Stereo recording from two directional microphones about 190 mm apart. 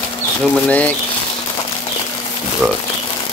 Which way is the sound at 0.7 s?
10° left (ahead or behind).